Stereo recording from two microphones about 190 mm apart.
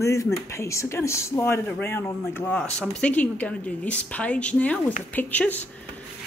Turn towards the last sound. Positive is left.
turn(degrees=10)  # may be behind; listen again after turning